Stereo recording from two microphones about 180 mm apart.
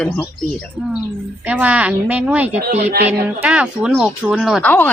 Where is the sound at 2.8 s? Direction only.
60° right (ahead or behind).